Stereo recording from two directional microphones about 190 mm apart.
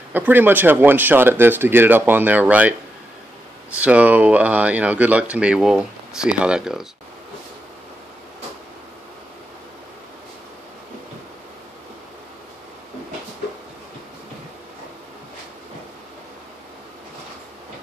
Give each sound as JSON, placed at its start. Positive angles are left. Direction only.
{"t": 0.1, "sound": "speech", "side_deg": -10}
{"t": 3.7, "sound": "speech", "side_deg": -5}